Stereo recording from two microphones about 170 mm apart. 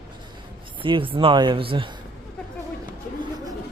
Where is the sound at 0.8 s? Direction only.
30° right (ahead or behind).